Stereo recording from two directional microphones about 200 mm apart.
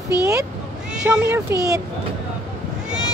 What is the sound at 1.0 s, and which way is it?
Speech, 10° right (ahead or behind).